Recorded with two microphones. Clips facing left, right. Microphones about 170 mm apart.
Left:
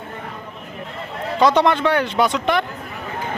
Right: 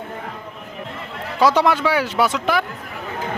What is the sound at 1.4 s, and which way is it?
Speech, 5° right (ahead or behind).